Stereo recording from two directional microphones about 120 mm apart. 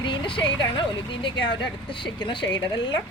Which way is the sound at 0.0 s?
40° left (ahead or behind).